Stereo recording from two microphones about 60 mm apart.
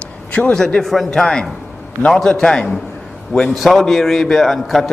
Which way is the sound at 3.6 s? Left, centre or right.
Centre.